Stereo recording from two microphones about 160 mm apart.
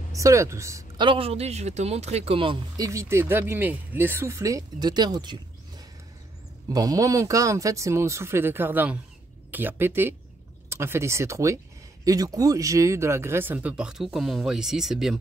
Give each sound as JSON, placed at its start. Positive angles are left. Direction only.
{"t": 0.1, "sound": "speech", "side_deg": -20}
{"t": 2.9, "sound": "speech", "side_deg": -15}
{"t": 6.7, "sound": "speech", "side_deg": -20}